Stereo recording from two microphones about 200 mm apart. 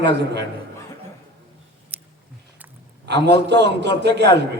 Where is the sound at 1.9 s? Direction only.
5° right (ahead or behind).